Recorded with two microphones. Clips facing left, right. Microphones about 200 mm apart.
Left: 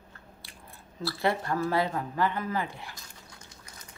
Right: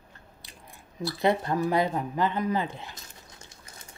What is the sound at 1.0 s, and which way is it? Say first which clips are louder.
Speech: right 3 dB; 20° right (ahead or behind).